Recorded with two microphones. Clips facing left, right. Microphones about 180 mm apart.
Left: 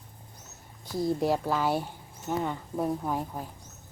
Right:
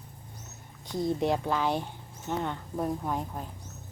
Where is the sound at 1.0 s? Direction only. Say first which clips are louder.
Left 1 dB; centre (ahead or behind).